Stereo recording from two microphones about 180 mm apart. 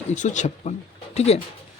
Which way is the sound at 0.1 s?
40° left (ahead or behind).